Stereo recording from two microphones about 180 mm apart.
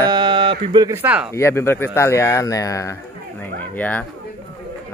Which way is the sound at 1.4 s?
15° left (ahead or behind).